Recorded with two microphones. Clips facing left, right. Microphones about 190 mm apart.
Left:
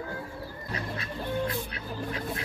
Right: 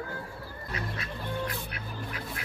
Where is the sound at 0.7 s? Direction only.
35° left (ahead or behind).